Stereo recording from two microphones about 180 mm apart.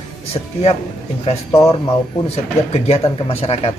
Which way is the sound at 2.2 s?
35° left (ahead or behind).